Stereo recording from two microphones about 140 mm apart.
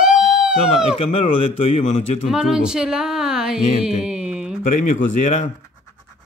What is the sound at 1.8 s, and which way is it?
Speech, 55° left (ahead or behind).